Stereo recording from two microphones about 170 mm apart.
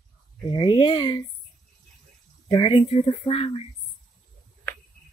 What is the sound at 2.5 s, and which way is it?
Speech, 25° left (ahead or behind).